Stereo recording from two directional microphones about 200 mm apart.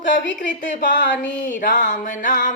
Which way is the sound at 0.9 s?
60° left (ahead or behind).